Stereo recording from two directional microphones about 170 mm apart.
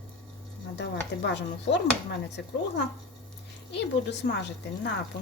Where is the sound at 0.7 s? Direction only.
90° left.